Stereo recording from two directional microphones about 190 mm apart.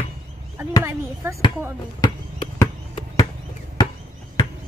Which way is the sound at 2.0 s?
20° left (ahead or behind).